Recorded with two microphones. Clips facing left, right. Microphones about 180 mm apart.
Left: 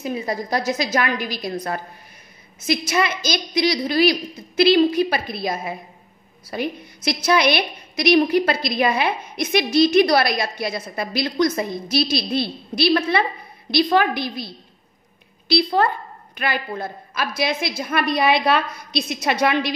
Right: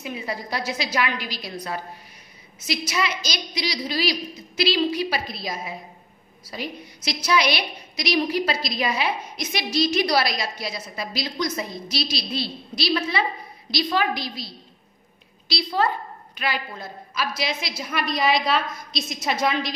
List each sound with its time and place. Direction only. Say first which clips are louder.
0.0 s a woman's voice: left 6 dB; 40° left (ahead or behind); by 19.7 s 65° left (ahead or behind)